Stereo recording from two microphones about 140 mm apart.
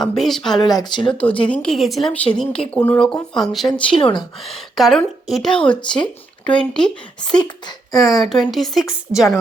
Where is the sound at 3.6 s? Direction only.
35° left (ahead or behind).